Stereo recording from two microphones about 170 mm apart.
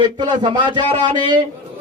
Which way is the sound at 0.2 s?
25° right (ahead or behind).